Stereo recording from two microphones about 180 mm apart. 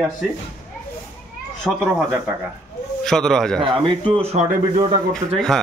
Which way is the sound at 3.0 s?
Centre (ahead or behind).